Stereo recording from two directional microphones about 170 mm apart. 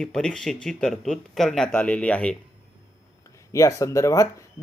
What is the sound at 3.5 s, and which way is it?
Speech, 20° left (ahead or behind).